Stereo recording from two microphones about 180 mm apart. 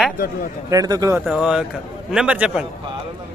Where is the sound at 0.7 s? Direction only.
20° right (ahead or behind).